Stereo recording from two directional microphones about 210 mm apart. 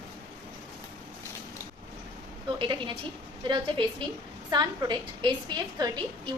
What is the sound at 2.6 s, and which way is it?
A woman's voice, 25° right (ahead or behind).